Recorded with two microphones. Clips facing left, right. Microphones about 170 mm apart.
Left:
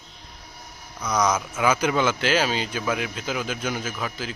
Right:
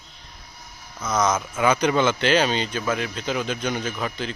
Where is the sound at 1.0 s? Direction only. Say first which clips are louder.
Right 1 dB; 10° left (ahead or behind).